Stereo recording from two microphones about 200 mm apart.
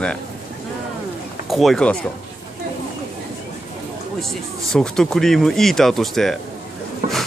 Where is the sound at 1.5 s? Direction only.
Centre (ahead or behind).